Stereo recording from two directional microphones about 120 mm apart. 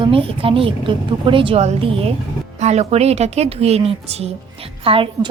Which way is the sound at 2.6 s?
70° right (ahead or behind).